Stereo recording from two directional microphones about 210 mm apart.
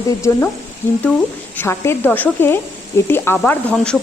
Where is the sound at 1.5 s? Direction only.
10° left (ahead or behind).